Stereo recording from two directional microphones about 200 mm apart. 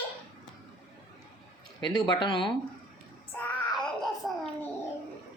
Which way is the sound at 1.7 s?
20° left (ahead or behind).